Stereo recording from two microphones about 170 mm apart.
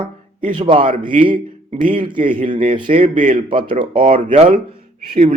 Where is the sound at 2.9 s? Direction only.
45° right (ahead or behind).